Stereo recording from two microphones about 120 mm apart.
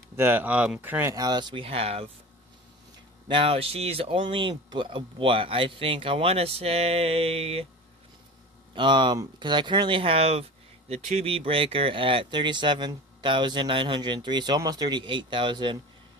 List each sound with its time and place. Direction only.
0.1 s speech: 20° right (ahead or behind)
1.1 s speech: 35° right (ahead or behind); by 2.0 s 55° right (ahead or behind)
3.3 s speech: 50° right (ahead or behind)
8.7 s speech: 40° right (ahead or behind)